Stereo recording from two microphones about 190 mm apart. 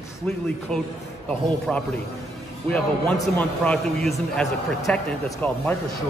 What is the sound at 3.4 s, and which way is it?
A man's voice, 5° left (ahead or behind).